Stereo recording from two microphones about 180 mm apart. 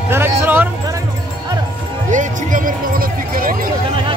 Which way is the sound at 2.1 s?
45° right (ahead or behind).